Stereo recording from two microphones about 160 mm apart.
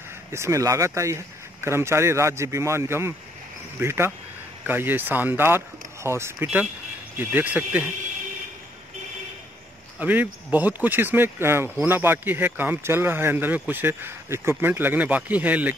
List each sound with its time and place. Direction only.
0.3 s speech: 15° right (ahead or behind)
9.9 s speech: 10° right (ahead or behind)